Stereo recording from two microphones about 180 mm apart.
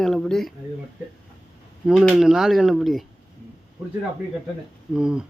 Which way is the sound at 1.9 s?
Centre (ahead or behind).